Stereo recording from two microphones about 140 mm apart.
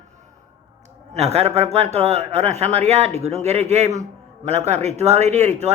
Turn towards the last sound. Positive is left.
turn(degrees=-50)  # may be behind; listen again after turning